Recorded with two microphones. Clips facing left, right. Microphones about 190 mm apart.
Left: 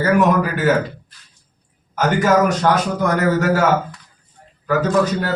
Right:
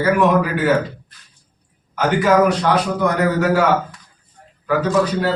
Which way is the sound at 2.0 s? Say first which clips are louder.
Right 1 dB; 45° left (ahead or behind).